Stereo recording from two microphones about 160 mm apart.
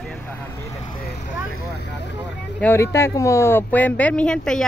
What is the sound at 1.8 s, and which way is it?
Speech, 90° left.